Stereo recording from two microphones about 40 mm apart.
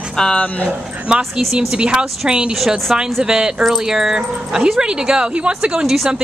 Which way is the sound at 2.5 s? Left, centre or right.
Centre.